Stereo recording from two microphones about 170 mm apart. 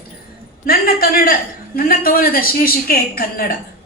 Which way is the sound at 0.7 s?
65° left (ahead or behind).